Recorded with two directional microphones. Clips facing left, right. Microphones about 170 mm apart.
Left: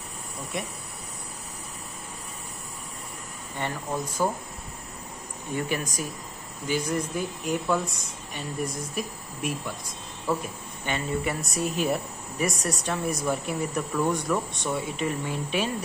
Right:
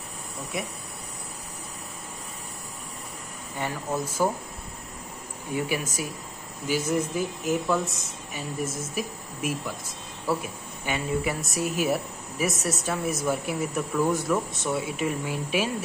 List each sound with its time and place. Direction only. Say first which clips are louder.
0.5 s speech: right 1 dB; 5° right (ahead or behind)
3.5 s speech: right 1 dB; 5° right (ahead or behind)
5.5 s speech: right 1 dB; 10° right (ahead or behind)
8.6 s speech: right 1 dB; 25° right (ahead or behind)
8.9 s speech: right 1 dB; 5° right (ahead or behind)